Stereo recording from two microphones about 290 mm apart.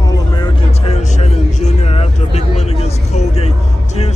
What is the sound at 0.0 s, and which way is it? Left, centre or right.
Vehicle, centre.